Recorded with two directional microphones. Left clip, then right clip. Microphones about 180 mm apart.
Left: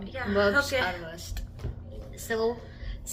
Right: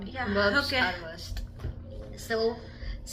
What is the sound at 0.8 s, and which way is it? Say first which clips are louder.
Speech: even; 20° left (ahead or behind).